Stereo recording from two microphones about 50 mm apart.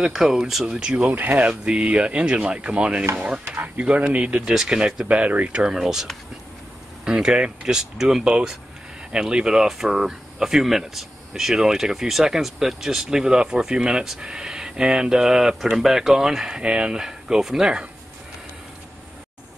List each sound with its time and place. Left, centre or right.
0.1 s speech: centre
0.7 s speech: right
1.0 s speech: right
1.5 s speech: centre
4.5 s speech: centre
5.0 s speech: right; by 6.0 s centre
7.1 s speech: centre